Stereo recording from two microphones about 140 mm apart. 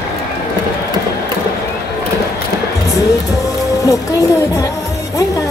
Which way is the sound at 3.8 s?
25° left (ahead or behind).